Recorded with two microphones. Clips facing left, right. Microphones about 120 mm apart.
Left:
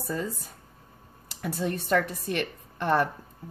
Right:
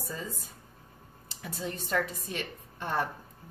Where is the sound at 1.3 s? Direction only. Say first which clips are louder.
Left 7 dB; 65° left (ahead or behind).